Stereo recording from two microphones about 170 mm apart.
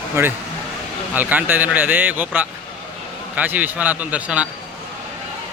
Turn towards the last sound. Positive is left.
turn(degrees=-5)  # may be behind; listen again after turning